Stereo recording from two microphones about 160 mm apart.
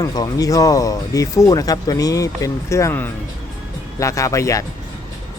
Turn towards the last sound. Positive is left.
turn(degrees=20)  # may be behind; listen again after turning